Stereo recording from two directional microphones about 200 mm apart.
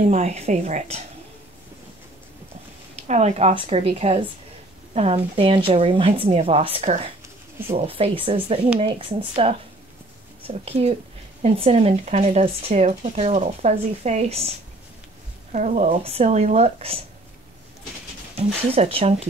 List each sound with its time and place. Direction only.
0.0 s speech: 35° right (ahead or behind)
3.0 s speech: 35° right (ahead or behind)
15.5 s speech: 35° right (ahead or behind)
18.3 s speech: 30° right (ahead or behind)